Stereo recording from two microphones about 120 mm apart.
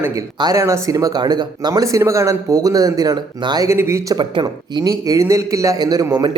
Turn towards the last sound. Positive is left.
turn(degrees=-35)  # may be behind; listen again after turning